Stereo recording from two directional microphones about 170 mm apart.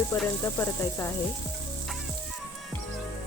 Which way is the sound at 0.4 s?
15° left (ahead or behind).